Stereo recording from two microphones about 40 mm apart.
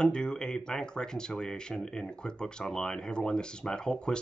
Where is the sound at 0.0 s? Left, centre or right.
Centre.